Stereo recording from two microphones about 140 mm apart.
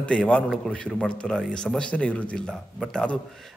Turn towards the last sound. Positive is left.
turn(degrees=5)  # may be behind; listen again after turning